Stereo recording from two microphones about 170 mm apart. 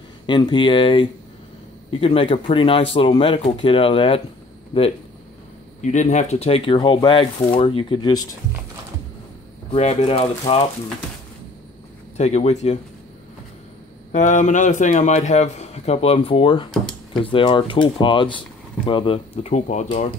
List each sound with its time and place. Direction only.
0.3 s speech: 25° left (ahead or behind)
9.7 s speech: 40° left (ahead or behind)
12.2 s speech: 40° left (ahead or behind)
14.1 s a man's voice: 45° left (ahead or behind)
16.7 s drawer open or close: centre (ahead or behind)
17.2 s speech: 30° left (ahead or behind)